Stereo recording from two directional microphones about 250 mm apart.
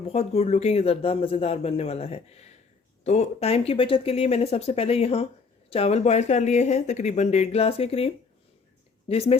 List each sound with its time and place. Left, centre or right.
0.1 s speech: left